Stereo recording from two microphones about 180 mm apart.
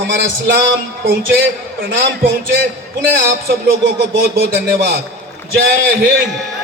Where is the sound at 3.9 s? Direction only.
65° right (ahead or behind).